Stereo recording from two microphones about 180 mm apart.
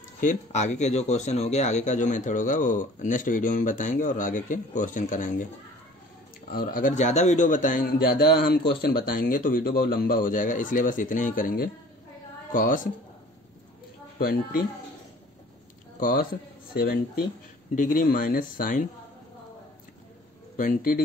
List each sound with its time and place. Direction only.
0.2 s speech: 40° left (ahead or behind)
6.5 s speech: 55° left (ahead or behind)
14.1 s speech: 55° left (ahead or behind)
16.0 s speech: 50° left (ahead or behind)
20.5 s speech: 50° left (ahead or behind)